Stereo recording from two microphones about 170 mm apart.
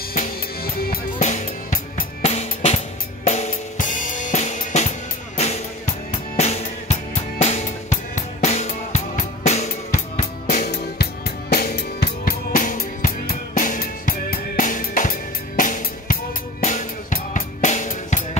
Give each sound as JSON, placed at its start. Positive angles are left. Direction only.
{"t": 0.1, "sound": "music", "side_deg": 55}
{"t": 1.2, "sound": "drum kit", "side_deg": 50}
{"t": 2.2, "sound": "drum kit", "side_deg": 35}
{"t": 10.7, "sound": "drum kit", "side_deg": 70}